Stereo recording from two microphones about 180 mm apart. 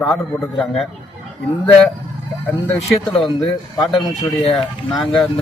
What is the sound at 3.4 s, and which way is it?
Speech, 25° left (ahead or behind).